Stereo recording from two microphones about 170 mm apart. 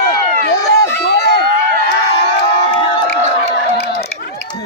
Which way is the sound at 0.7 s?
70° left (ahead or behind).